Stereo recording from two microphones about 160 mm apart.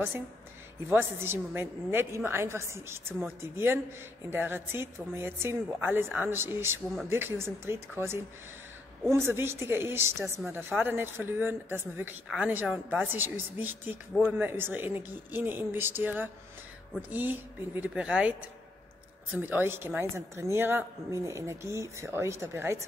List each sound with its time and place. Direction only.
0.8 s a woman's voice: 15° right (ahead or behind)